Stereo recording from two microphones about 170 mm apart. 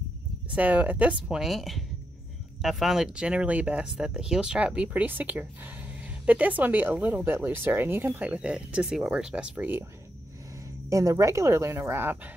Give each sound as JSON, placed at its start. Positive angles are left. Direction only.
{"t": 0.6, "sound": "speech", "side_deg": -10}